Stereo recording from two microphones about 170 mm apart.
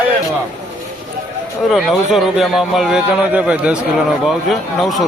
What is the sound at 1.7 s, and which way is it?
Speech, centre (ahead or behind).